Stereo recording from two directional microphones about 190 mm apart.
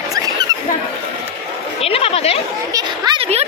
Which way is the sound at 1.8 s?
30° left (ahead or behind).